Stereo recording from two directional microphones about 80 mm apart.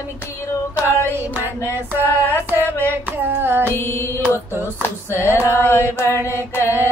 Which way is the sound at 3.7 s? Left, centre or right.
Left.